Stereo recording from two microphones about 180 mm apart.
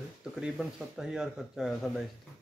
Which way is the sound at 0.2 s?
5° right (ahead or behind).